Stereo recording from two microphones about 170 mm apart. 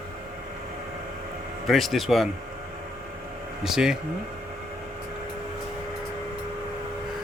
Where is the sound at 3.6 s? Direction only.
5° right (ahead or behind).